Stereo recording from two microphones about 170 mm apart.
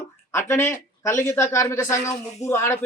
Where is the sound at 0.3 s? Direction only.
15° left (ahead or behind).